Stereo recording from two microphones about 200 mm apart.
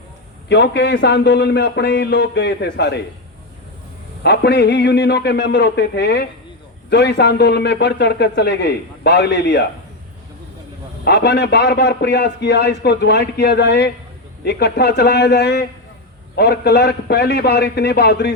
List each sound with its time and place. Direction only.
0.4 s a man's voice: 55° left (ahead or behind)
4.2 s a man's voice: 55° left (ahead or behind)
11.0 s a man's voice: 55° left (ahead or behind)